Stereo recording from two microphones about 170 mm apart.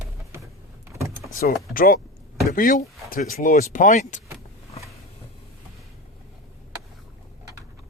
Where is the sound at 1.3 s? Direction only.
55° left (ahead or behind).